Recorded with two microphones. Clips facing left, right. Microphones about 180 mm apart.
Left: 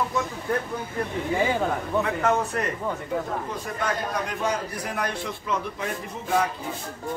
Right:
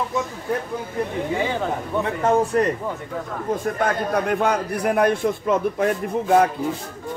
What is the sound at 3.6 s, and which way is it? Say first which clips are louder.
A man's voice: right 7 dB; 55° right (ahead or behind).